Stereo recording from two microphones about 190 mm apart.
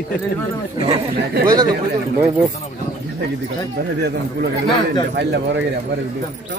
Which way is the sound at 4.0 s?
60° right (ahead or behind).